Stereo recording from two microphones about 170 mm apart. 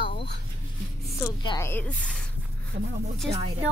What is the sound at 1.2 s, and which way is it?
A woman's voice, 20° left (ahead or behind).